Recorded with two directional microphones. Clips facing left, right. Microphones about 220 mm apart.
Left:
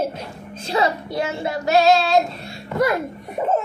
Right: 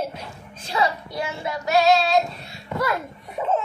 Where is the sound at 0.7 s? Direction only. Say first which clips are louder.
Left 3 dB; 40° left (ahead or behind).